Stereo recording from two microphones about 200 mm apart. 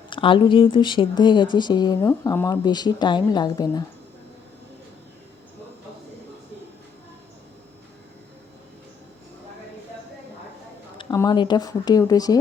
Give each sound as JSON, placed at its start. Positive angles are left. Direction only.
{"t": 0.1, "sound": "speech", "side_deg": 25}
{"t": 10.9, "sound": "speech", "side_deg": 20}